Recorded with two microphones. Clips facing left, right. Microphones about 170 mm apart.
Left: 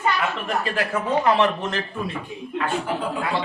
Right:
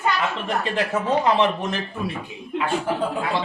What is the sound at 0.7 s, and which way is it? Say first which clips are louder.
Speech: right 2 dB; 20° right (ahead or behind).